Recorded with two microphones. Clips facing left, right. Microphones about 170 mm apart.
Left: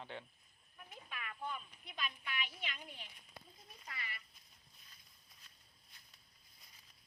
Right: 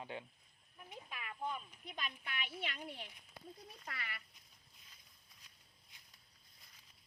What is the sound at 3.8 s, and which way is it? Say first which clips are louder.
Speech: right 1 dB; 65° right (ahead or behind).